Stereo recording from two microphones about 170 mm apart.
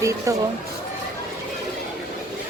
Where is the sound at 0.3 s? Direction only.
20° right (ahead or behind).